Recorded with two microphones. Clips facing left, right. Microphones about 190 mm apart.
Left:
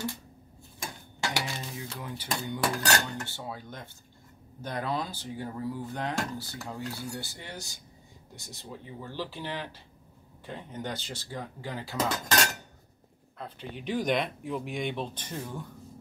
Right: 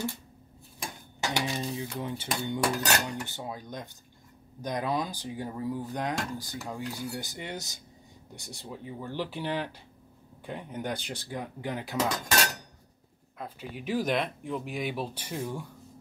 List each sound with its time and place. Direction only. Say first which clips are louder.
1.3 s speech: right 4 dB; 20° right (ahead or behind)
13.4 s speech: right 1 dB; 5° right (ahead or behind)